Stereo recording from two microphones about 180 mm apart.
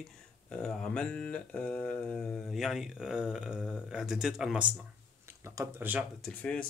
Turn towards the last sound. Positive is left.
turn(degrees=5)  # may be behind; listen again after turning